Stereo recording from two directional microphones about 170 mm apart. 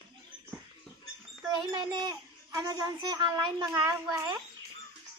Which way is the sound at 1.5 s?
20° right (ahead or behind).